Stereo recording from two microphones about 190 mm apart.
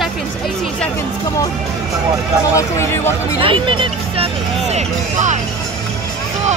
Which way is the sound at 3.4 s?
25° right (ahead or behind).